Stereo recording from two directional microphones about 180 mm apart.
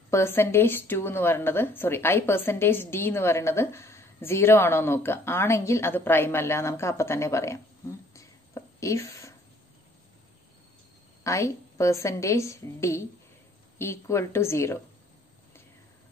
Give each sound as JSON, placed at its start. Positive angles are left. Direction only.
{"t": 0.1, "sound": "a woman's voice", "side_deg": 15}
{"t": 8.1, "sound": "a sound", "side_deg": 15}
{"t": 11.2, "sound": "a woman's voice", "side_deg": 15}